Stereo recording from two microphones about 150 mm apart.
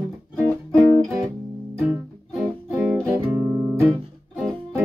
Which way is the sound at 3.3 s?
15° right (ahead or behind).